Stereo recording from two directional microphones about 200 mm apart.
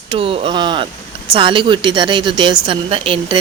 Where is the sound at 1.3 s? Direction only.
25° right (ahead or behind).